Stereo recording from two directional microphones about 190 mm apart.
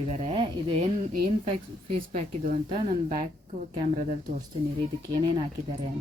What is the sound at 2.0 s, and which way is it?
Speech, 45° right (ahead or behind).